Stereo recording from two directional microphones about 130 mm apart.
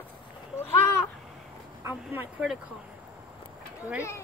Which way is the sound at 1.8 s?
15° right (ahead or behind).